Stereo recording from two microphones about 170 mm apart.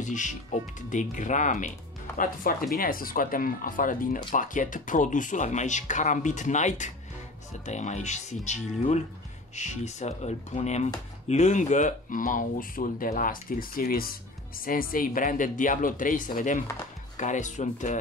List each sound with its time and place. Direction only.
0.0 s speech: 45° left (ahead or behind)
2.1 s speech: 55° left (ahead or behind)